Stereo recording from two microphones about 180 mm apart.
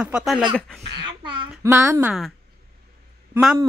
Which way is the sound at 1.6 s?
10° right (ahead or behind).